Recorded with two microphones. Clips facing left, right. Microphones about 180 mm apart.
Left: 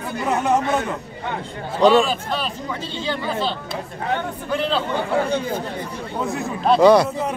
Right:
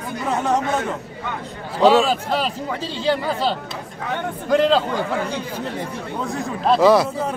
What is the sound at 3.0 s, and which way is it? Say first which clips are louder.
A woman's voice: right 4 dB; 35° right (ahead or behind).